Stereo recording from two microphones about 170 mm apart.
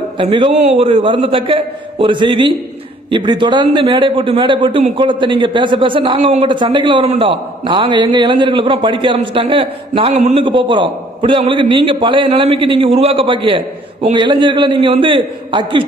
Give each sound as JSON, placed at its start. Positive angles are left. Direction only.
{"t": 0.2, "sound": "a man's voice", "side_deg": -30}